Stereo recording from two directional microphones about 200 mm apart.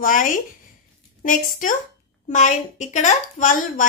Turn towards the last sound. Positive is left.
turn(degrees=40)  # may be behind; listen again after turning